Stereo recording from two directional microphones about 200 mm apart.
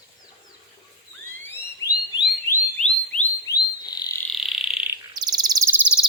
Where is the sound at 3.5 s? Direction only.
20° left (ahead or behind).